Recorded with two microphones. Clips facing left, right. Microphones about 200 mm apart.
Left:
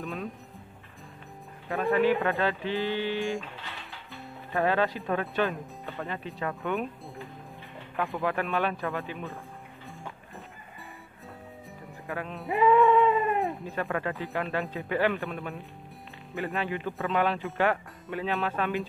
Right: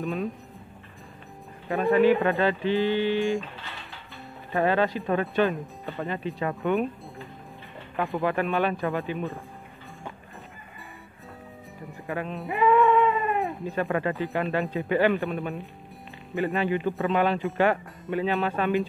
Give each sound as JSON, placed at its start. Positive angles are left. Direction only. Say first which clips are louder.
{"t": 0.0, "sound": "speech", "louder": "right 6 dB", "side_deg": 0}
{"t": 1.7, "sound": "speech", "louder": "right 4 dB", "side_deg": 0}
{"t": 12.1, "sound": "speech", "louder": "right 4 dB", "side_deg": 0}
{"t": 12.4, "sound": "music", "louder": "even", "side_deg": 20}
{"t": 12.8, "sound": "speech", "louder": "even", "side_deg": 0}